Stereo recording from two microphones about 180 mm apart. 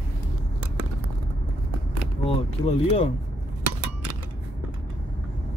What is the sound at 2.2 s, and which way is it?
Speech, 35° left (ahead or behind).